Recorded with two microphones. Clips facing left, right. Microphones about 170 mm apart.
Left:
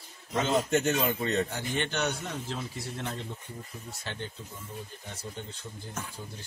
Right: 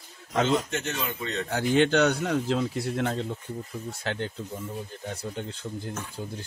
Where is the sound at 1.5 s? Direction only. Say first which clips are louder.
Right 11 dB; 90° right.